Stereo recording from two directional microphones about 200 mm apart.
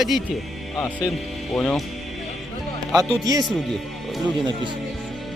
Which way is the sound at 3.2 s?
20° right (ahead or behind).